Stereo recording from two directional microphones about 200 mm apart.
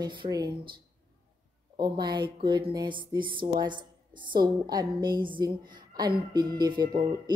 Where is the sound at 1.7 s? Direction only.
20° right (ahead or behind).